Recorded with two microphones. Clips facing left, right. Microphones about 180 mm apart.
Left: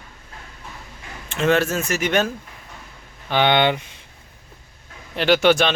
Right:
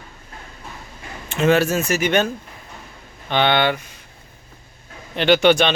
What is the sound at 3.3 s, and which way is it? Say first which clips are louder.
Speech: even; 10° left (ahead or behind).